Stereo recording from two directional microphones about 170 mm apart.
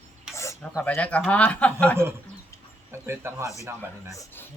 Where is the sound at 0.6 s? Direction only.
5° left (ahead or behind).